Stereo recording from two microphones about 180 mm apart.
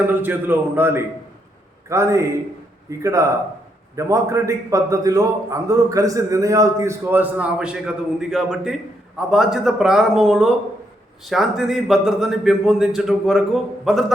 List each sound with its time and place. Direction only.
0.1 s a man's voice: 10° right (ahead or behind)